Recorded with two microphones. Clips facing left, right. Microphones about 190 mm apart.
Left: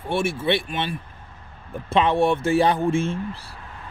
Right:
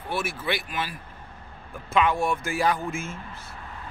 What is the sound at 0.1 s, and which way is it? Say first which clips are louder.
Speech: left 7 dB; 25° left (ahead or behind).